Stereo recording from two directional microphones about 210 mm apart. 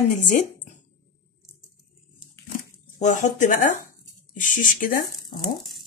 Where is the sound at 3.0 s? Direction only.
35° left (ahead or behind).